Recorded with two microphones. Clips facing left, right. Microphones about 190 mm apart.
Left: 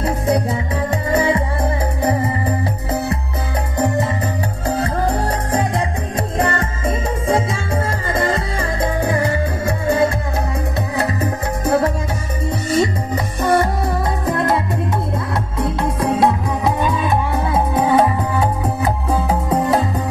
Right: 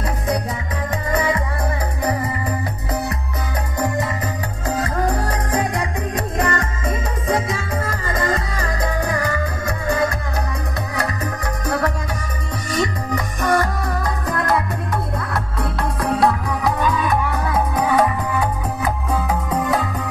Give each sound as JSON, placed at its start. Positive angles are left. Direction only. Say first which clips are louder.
{"t": 1.1, "sound": "music", "louder": "left 4 dB", "side_deg": 25}
{"t": 3.7, "sound": "music", "louder": "left 4 dB", "side_deg": 25}
{"t": 11.6, "sound": "music", "louder": "left 5 dB", "side_deg": 25}
{"t": 15.6, "sound": "music", "louder": "left 5 dB", "side_deg": 20}